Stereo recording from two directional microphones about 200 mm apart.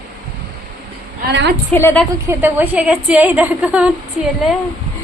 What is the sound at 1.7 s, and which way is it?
Speech, 10° left (ahead or behind).